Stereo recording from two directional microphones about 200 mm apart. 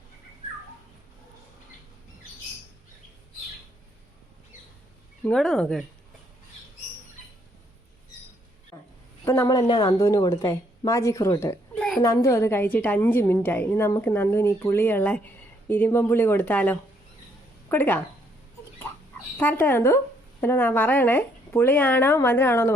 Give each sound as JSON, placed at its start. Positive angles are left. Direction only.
{"t": 5.2, "sound": "speech", "side_deg": 5}
{"t": 8.7, "sound": "a sound", "side_deg": 15}
{"t": 9.2, "sound": "a woman's voice", "side_deg": 15}
{"t": 19.4, "sound": "a woman's voice", "side_deg": 10}